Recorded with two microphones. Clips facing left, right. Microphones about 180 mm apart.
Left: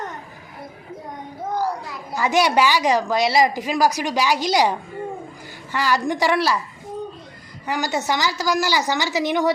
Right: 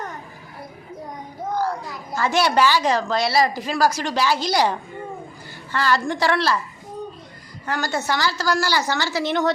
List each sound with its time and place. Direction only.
1.5 s a child's voice: 15° left (ahead or behind)
7.7 s a child's voice: 15° left (ahead or behind)